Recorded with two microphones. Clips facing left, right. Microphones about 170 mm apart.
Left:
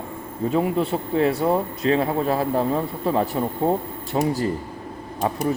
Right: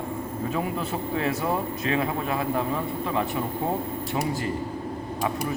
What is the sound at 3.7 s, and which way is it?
Speech, 30° left (ahead or behind).